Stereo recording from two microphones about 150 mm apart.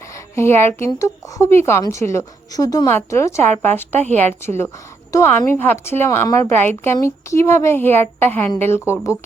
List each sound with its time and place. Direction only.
0.3 s a woman's voice: 15° left (ahead or behind)